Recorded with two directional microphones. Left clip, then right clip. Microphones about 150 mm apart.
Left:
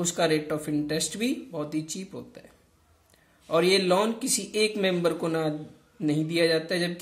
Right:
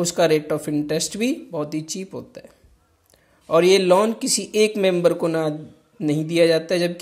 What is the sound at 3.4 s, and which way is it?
A man's voice, 40° right (ahead or behind).